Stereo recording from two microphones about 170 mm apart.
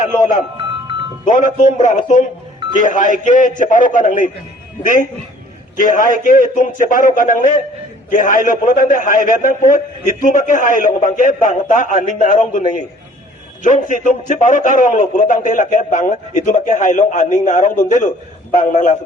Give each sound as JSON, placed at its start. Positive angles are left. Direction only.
{"t": 1.2, "sound": "a man's voice", "side_deg": 50}
{"t": 5.7, "sound": "a man's voice", "side_deg": 50}